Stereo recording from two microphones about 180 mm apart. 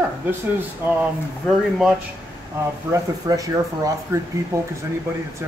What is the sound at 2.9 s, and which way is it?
Speech, 20° right (ahead or behind).